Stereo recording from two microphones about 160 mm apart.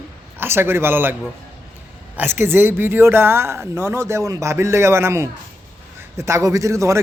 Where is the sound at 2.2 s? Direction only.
15° right (ahead or behind).